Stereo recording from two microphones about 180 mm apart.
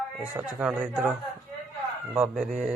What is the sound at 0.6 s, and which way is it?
Speech, 5° right (ahead or behind).